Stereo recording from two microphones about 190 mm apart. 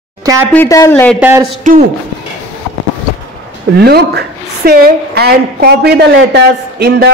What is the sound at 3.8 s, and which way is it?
A woman's voice, 60° right (ahead or behind).